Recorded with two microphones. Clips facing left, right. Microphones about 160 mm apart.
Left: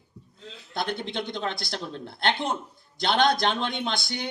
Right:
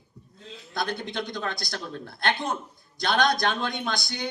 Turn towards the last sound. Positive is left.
turn(degrees=20)  # may be behind; listen again after turning